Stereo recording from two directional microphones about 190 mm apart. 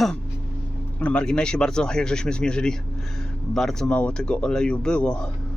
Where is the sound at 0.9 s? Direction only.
5° left (ahead or behind).